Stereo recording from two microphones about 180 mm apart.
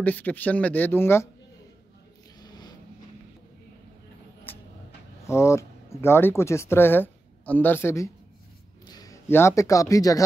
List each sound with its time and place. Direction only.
0.0 s speech: 10° left (ahead or behind)
4.5 s vehicle: 10° left (ahead or behind)
5.2 s a man's voice: 15° left (ahead or behind)